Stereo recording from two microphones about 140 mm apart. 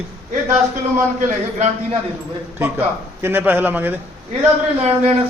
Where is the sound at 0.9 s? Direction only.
60° right (ahead or behind).